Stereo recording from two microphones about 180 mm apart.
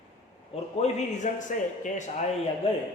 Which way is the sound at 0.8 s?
45° left (ahead or behind).